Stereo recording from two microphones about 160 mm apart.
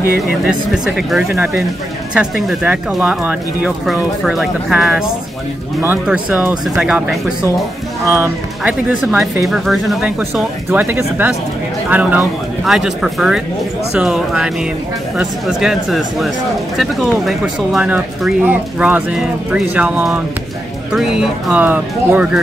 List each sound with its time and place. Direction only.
0.5 s speech: 5° right (ahead or behind)
1.3 s speech: 15° right (ahead or behind)
2.1 s speech: 5° right (ahead or behind)